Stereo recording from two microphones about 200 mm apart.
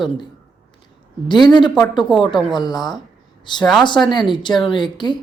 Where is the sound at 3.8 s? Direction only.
20° left (ahead or behind).